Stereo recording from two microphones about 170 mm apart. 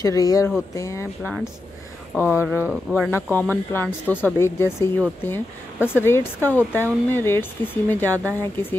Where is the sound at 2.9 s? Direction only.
10° left (ahead or behind).